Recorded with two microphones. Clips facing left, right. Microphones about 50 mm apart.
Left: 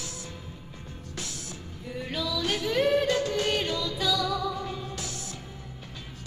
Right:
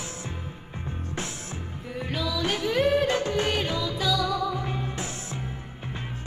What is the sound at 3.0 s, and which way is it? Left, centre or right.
Music, right.